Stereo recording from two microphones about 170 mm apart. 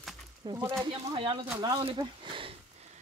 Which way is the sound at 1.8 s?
30° right (ahead or behind).